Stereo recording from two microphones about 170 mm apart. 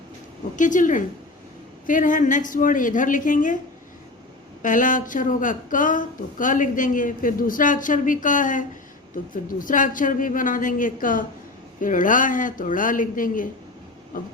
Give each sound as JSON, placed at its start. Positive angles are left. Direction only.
{"t": 0.5, "sound": "speech", "side_deg": 50}
{"t": 4.6, "sound": "speech", "side_deg": 50}
{"t": 14.1, "sound": "a sound", "side_deg": 55}